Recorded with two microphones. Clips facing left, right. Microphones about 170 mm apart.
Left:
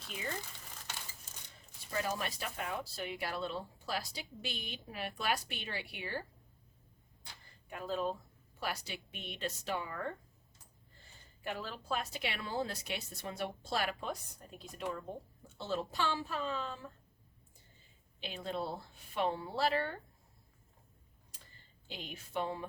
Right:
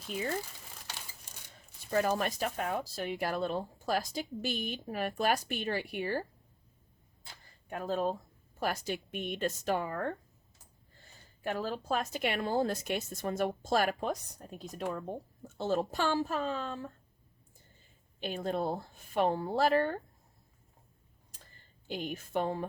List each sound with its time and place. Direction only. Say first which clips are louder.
1.9 s a woman's voice: right 8 dB; 50° right (ahead or behind)
7.7 s a woman's voice: right 4 dB; 45° right (ahead or behind)
11.4 s a woman's voice: right 6 dB; 45° right (ahead or behind)
18.2 s a woman's voice: right 6 dB; 50° right (ahead or behind)
21.8 s a woman's voice: right 10 dB; 45° right (ahead or behind)